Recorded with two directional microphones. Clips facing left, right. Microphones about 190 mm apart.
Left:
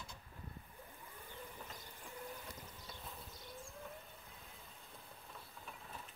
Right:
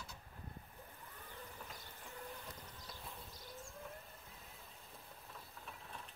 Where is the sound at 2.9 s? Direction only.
Centre (ahead or behind).